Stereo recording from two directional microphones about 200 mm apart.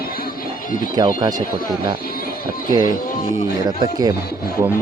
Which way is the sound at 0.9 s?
20° right (ahead or behind).